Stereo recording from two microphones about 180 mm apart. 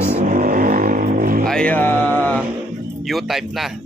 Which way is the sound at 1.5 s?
5° left (ahead or behind).